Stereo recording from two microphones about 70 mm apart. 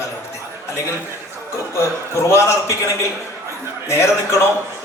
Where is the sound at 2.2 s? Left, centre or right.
Left.